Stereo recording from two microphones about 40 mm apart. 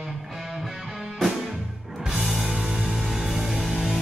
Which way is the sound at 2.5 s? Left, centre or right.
Centre.